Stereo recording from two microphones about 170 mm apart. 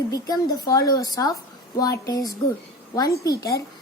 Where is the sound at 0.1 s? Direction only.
20° left (ahead or behind).